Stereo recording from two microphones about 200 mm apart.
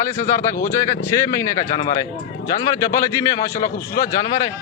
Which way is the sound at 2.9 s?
15° left (ahead or behind).